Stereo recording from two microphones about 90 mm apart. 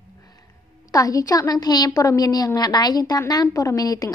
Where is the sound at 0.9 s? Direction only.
40° left (ahead or behind).